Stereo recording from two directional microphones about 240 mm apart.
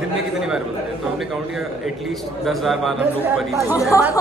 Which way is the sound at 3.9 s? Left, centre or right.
Centre.